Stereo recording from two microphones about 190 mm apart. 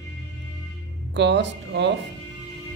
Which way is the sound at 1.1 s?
65° right (ahead or behind).